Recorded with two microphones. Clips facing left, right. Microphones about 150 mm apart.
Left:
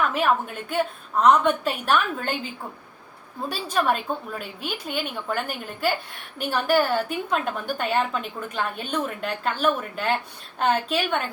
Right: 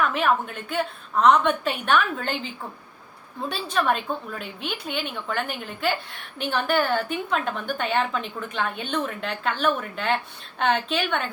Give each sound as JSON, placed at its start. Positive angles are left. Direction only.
{"t": 0.1, "sound": "a woman's voice", "side_deg": 5}
{"t": 3.5, "sound": "a woman's voice", "side_deg": 5}
{"t": 4.4, "sound": "a woman's voice", "side_deg": 45}
{"t": 4.9, "sound": "a woman's voice", "side_deg": 5}